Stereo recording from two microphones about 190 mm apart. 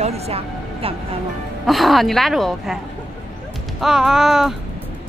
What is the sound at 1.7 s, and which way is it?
Speech, centre (ahead or behind).